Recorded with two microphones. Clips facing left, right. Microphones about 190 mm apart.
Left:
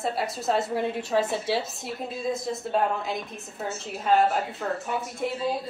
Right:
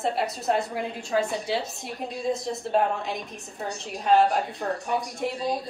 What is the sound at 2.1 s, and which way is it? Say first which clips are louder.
Speech: right 2 dB; 5° left (ahead or behind).